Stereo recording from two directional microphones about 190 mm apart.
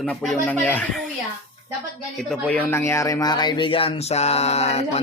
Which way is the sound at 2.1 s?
5° left (ahead or behind).